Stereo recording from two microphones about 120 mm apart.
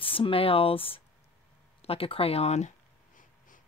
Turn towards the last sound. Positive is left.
turn(degrees=90)